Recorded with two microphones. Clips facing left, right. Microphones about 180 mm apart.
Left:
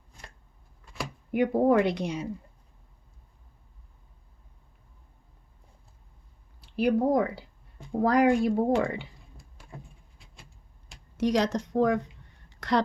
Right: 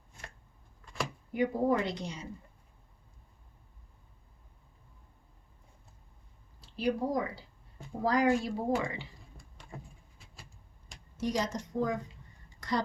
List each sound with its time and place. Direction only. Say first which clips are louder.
1.3 s speech: left 6 dB; 60° left (ahead or behind)
6.6 s speech: left 7 dB; 65° left (ahead or behind)
11.2 s speech: left 7 dB; 75° left (ahead or behind)